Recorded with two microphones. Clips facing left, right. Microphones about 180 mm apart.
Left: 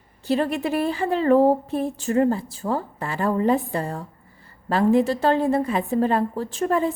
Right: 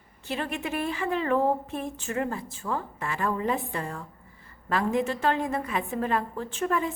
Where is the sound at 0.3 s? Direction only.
35° left (ahead or behind).